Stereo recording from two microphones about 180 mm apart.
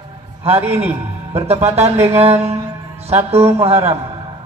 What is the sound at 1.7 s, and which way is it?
Speech, 35° right (ahead or behind).